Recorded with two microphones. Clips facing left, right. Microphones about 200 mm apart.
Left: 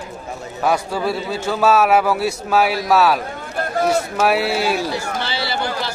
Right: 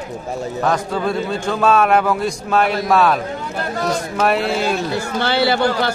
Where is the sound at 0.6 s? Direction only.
10° left (ahead or behind).